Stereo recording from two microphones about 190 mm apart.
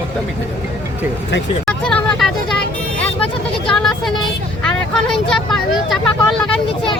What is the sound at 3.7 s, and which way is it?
Speech, centre (ahead or behind).